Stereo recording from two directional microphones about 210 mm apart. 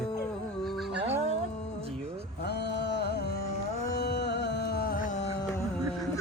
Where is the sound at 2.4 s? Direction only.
50° left (ahead or behind).